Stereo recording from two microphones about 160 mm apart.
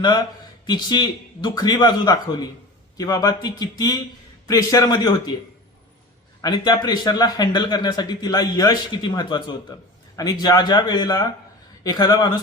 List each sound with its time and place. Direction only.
0.0 s a man's voice: 25° left (ahead or behind)
6.4 s a man's voice: 25° left (ahead or behind)